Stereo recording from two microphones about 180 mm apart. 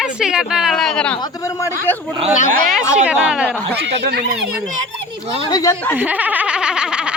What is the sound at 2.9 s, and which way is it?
Speech, 5° right (ahead or behind).